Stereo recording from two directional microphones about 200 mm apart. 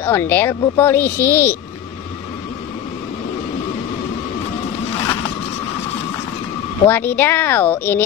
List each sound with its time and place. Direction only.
0.0 s speech: 10° left (ahead or behind)
5.0 s zipper: 20° left (ahead or behind)
6.9 s speech: 10° left (ahead or behind)